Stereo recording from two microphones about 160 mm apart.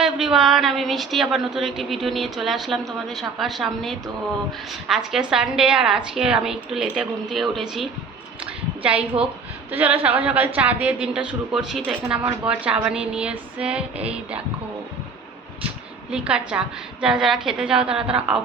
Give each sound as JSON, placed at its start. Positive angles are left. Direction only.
{"t": 0.0, "sound": "a woman's voice", "side_deg": -5}
{"t": 16.1, "sound": "a woman's voice", "side_deg": -5}